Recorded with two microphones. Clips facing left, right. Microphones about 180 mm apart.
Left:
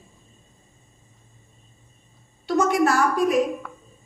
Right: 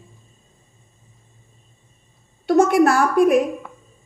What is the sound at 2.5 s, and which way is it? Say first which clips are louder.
Speech: right 5 dB; 55° right (ahead or behind).